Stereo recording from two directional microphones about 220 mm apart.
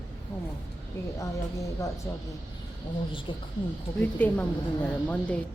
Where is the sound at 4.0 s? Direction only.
5° left (ahead or behind).